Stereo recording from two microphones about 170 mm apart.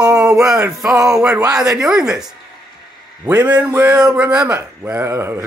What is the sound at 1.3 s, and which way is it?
Speech, 20° right (ahead or behind).